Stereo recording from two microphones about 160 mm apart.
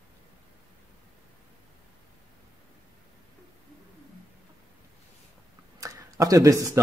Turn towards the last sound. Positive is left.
turn(degrees=-20)  # may be behind; listen again after turning